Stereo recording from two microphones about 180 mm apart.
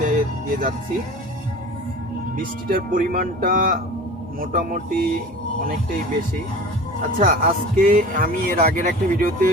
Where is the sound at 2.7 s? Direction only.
55° right (ahead or behind).